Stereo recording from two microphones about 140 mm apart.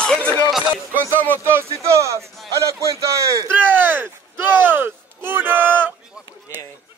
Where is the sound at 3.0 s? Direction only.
25° right (ahead or behind).